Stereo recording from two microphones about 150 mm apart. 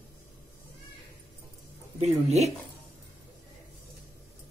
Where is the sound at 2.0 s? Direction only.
45° right (ahead or behind).